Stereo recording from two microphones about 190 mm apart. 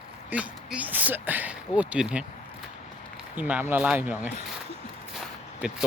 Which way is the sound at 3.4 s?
10° right (ahead or behind).